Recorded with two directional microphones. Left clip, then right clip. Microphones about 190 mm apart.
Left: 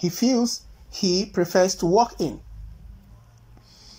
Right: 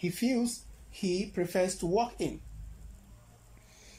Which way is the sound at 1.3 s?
5° right (ahead or behind).